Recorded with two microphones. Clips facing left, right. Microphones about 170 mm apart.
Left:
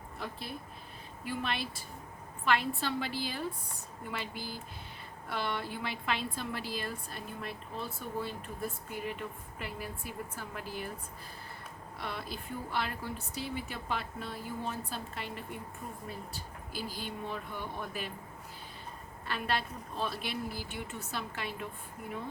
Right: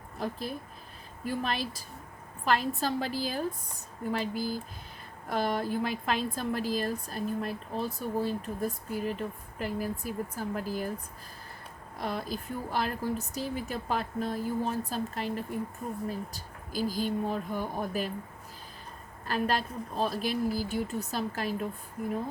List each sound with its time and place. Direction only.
0.2 s a woman's voice: 40° right (ahead or behind)
11.9 s a woman's voice: 40° right (ahead or behind)
19.3 s a woman's voice: 40° right (ahead or behind)